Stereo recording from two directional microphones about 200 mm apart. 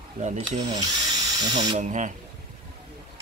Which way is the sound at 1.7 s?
40° right (ahead or behind).